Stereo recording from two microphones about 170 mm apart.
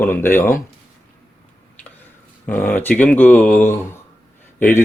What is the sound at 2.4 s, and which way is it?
A man's voice, 10° left (ahead or behind).